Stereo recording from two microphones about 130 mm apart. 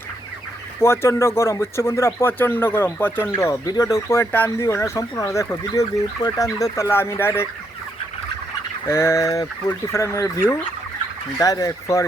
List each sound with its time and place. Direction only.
0.8 s speech: 20° left (ahead or behind)
8.9 s speech: 20° left (ahead or behind)
11.3 s speech: 25° left (ahead or behind)